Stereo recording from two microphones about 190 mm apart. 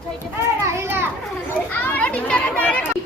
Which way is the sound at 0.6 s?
15° right (ahead or behind).